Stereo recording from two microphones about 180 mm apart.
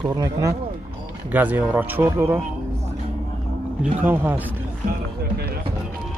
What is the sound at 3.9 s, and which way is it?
Speech, 10° right (ahead or behind).